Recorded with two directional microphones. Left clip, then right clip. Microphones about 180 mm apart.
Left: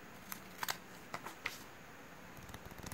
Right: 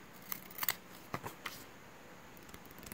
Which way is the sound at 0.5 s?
5° right (ahead or behind).